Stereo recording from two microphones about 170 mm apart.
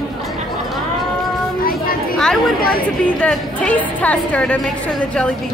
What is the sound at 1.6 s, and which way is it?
Children playing, 60° left (ahead or behind).